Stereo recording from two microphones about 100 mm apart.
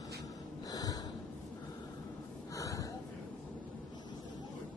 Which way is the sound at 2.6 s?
35° left (ahead or behind).